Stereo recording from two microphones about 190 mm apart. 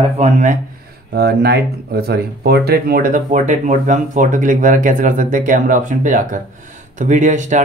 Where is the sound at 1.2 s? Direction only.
55° right (ahead or behind).